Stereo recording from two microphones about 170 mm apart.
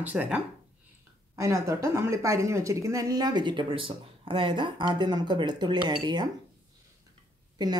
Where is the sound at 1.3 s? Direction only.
20° right (ahead or behind).